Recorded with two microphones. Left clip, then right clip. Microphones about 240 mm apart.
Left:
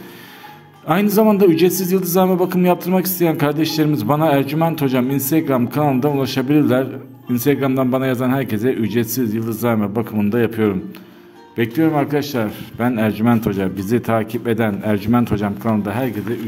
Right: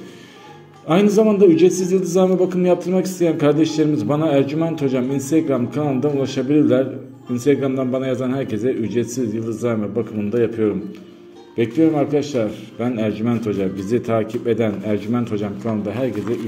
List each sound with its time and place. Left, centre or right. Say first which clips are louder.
0.9 s a man's voice: even; left